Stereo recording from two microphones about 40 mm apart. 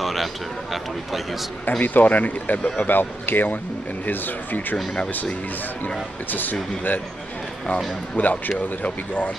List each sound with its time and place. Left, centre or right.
0.0 s a sound: centre
1.7 s speech: left
2.8 s speech: left
6.3 s speech: left
7.6 s speech: left